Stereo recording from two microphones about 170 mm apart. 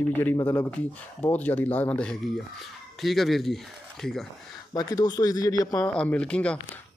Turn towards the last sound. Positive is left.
turn(degrees=5)  # may be behind; listen again after turning